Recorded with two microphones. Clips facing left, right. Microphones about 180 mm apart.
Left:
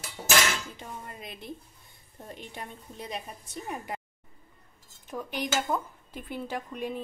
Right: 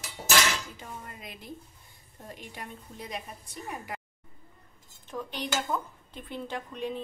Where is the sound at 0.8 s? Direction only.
25° left (ahead or behind).